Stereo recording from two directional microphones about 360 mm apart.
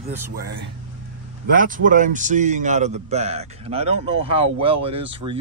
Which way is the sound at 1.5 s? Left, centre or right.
Right.